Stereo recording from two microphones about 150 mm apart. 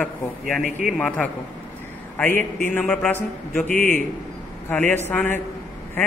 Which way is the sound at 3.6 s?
55° right (ahead or behind).